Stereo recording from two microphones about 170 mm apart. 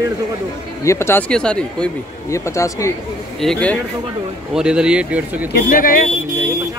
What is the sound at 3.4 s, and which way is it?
Speech, 5° left (ahead or behind).